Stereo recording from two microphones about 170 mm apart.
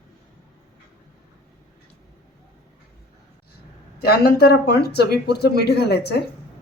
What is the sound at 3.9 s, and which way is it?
Speech, 70° left (ahead or behind).